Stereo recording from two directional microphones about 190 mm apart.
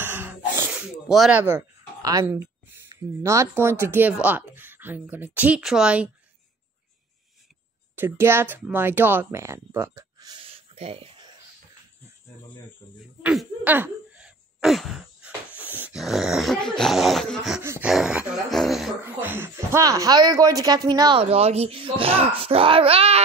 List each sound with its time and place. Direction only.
0.0 s a sound: 10° right (ahead or behind)
2.0 s speech: 15° right (ahead or behind)
7.9 s speech: 10° right (ahead or behind); by 11.3 s 30° right (ahead or behind)
13.2 s a sound: 5° right (ahead or behind)
17.6 s speech: 10° right (ahead or behind)
21.2 s a child's voice: 35° right (ahead or behind)